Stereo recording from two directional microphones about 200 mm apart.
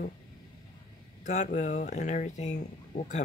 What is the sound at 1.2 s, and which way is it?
Speech, 35° left (ahead or behind).